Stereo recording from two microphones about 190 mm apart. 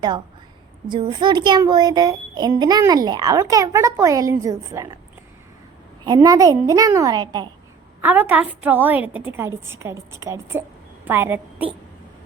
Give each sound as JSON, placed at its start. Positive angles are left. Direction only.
{"t": 0.9, "sound": "a child's voice", "side_deg": -25}
{"t": 6.1, "sound": "a child's voice", "side_deg": -20}
{"t": 8.0, "sound": "a woman's voice", "side_deg": -10}